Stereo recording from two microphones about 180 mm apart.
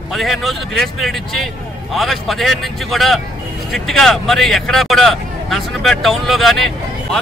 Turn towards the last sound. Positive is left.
turn(degrees=0)  # may be behind; listen again after turning